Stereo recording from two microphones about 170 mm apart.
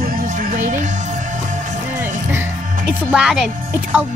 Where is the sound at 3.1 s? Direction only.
5° right (ahead or behind).